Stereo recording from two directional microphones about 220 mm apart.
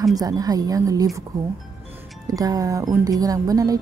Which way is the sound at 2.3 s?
15° right (ahead or behind).